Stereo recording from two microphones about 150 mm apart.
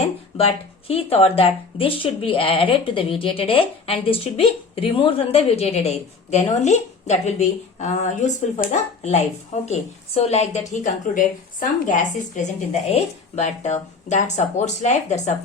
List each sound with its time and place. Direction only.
0.0 s a woman's voice: 40° left (ahead or behind)